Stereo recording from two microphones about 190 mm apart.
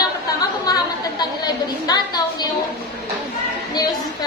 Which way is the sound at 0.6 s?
20° left (ahead or behind).